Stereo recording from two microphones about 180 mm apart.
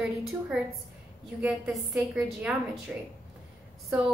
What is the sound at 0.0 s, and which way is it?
A woman's voice, 5° right (ahead or behind).